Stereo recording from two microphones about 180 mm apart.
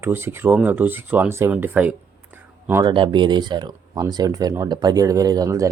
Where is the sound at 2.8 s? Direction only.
25° right (ahead or behind).